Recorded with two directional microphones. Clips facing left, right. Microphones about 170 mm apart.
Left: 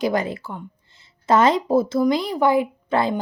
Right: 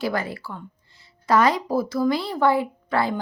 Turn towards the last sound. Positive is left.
turn(degrees=20)  # may be behind; listen again after turning